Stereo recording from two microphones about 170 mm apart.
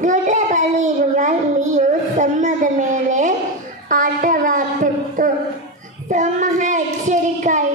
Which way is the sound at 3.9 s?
50° right (ahead or behind).